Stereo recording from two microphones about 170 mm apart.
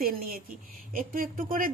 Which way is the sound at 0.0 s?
60° right (ahead or behind).